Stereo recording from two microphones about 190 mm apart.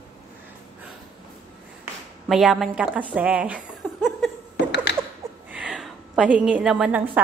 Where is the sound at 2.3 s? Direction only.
Centre (ahead or behind).